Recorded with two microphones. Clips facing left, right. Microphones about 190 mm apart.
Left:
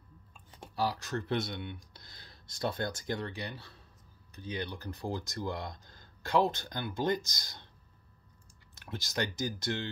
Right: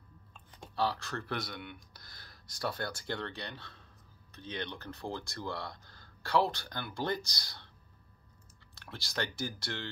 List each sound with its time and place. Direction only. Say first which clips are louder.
0.3 s speech: left 1 dB; 10° left (ahead or behind)
8.7 s speech: left 3 dB; 20° left (ahead or behind)